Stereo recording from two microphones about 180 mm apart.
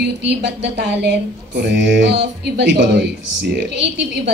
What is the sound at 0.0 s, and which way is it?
Speech, 70° right (ahead or behind).